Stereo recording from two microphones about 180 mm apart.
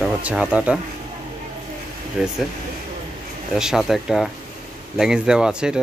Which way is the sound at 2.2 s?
5° right (ahead or behind).